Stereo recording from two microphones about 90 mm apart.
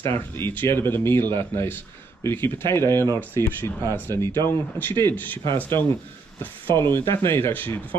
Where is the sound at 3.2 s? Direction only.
25° left (ahead or behind).